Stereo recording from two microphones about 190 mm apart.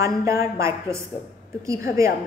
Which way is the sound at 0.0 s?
15° right (ahead or behind).